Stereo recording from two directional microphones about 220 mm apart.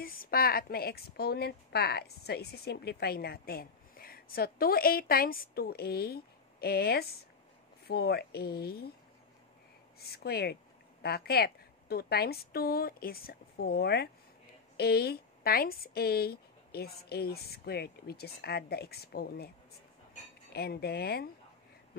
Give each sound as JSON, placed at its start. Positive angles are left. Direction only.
{"t": 0.0, "sound": "a woman's voice", "side_deg": 40}
{"t": 9.9, "sound": "a woman's voice", "side_deg": 45}
{"t": 20.5, "sound": "a woman's voice", "side_deg": 45}